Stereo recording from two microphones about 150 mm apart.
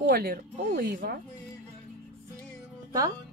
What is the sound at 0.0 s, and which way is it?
Speech, 85° right.